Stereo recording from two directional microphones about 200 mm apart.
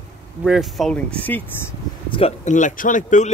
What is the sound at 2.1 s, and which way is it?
Speech, 30° left (ahead or behind).